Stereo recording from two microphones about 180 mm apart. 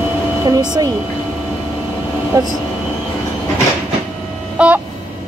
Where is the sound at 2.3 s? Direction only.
20° right (ahead or behind).